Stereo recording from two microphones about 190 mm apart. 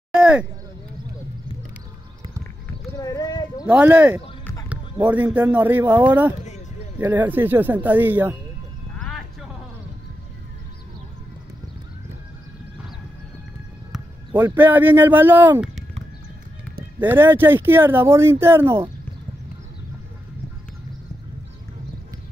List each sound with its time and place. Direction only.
0.1 s a sound: 5° right (ahead or behind)
3.0 s clip-clop: 20° left (ahead or behind)
3.6 s speech: 10° right (ahead or behind)
8.9 s horse: centre (ahead or behind)
14.4 s speech: 10° right (ahead or behind)
17.0 s speech: 10° right (ahead or behind)